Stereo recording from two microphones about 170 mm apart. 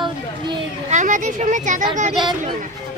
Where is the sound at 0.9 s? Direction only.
45° right (ahead or behind).